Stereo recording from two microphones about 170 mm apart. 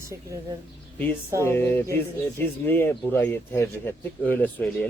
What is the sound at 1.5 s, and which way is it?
Speech, 15° left (ahead or behind).